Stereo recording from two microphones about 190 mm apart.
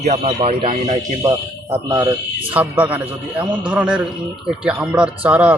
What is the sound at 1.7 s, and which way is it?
Speech, 15° right (ahead or behind).